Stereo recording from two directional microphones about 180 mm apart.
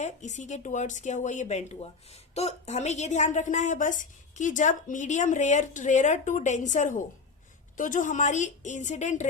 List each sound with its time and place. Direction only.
0.0 s a woman's voice: 40° left (ahead or behind)